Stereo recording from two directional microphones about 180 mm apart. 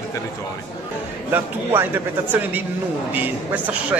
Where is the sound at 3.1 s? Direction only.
10° right (ahead or behind).